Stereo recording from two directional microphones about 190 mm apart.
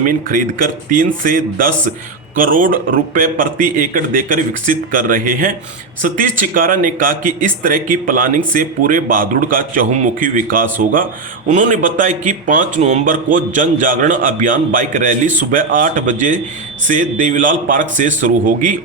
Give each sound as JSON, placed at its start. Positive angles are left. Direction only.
{"t": 0.0, "sound": "a man's voice", "side_deg": -45}